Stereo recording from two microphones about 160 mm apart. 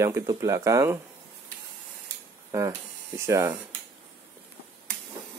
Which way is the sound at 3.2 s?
20° right (ahead or behind).